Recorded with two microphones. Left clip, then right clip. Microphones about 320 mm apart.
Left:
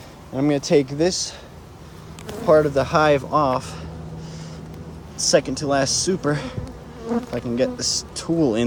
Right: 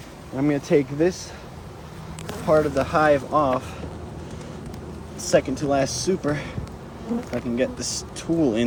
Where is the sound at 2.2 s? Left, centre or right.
Left.